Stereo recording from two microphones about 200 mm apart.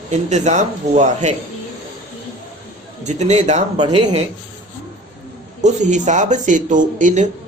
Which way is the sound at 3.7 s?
25° right (ahead or behind).